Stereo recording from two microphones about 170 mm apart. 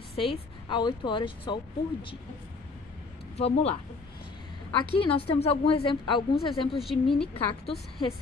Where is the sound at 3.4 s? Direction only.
40° left (ahead or behind).